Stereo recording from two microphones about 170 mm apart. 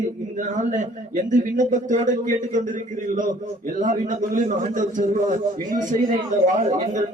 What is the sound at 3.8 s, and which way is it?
A man's voice, 45° right (ahead or behind).